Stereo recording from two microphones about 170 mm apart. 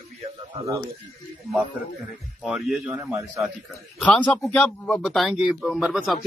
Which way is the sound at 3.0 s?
15° right (ahead or behind).